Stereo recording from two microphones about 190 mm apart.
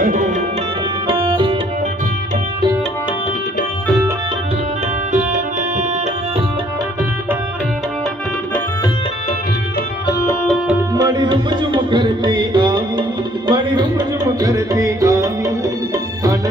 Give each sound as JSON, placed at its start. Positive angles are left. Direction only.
{"t": 0.0, "sound": "tabla", "side_deg": -45}
{"t": 1.0, "sound": "tabla", "side_deg": -25}
{"t": 5.1, "sound": "music", "side_deg": -40}
{"t": 11.0, "sound": "music", "side_deg": -20}